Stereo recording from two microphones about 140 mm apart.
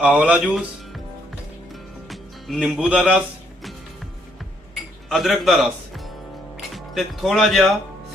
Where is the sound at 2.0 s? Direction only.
Centre (ahead or behind).